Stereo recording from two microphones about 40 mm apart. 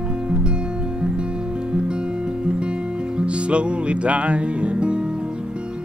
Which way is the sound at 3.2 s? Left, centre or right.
Right.